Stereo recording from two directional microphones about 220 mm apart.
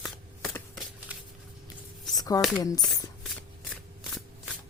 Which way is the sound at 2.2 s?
15° left (ahead or behind).